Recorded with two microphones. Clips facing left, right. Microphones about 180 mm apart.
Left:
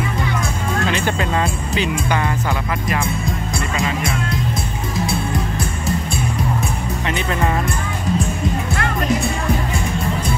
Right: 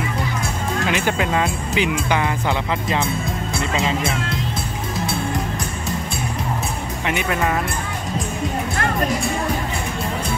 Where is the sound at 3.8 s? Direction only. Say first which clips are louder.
Even; 30° right (ahead or behind).